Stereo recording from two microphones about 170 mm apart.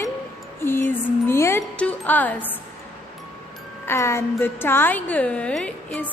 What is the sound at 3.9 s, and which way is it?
A woman's voice, 15° left (ahead or behind).